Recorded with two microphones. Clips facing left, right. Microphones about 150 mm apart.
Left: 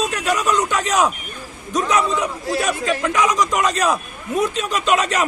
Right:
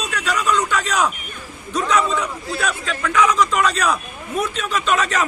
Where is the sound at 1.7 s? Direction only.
15° left (ahead or behind).